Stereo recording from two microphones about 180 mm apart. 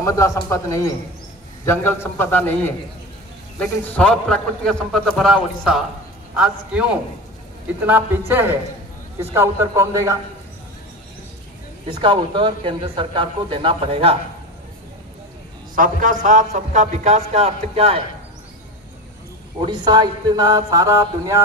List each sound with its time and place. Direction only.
0.0 s a man's voice: 15° left (ahead or behind); by 10.1 s 15° right (ahead or behind)
11.9 s speech: 25° right (ahead or behind)
15.7 s a man's voice: 45° right (ahead or behind)
19.6 s speech: 25° right (ahead or behind)